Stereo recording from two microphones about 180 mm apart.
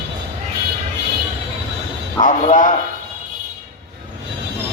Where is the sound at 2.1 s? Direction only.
45° left (ahead or behind).